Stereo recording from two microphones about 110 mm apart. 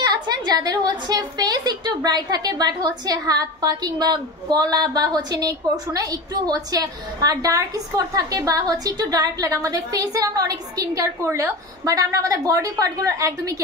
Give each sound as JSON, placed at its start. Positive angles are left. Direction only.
{"t": 0.0, "sound": "a woman's voice", "side_deg": -40}